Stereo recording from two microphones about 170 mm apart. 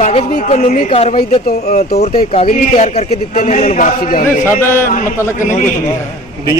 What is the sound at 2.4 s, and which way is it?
A man's voice, 40° left (ahead or behind).